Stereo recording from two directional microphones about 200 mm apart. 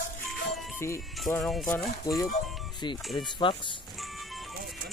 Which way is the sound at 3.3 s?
25° left (ahead or behind).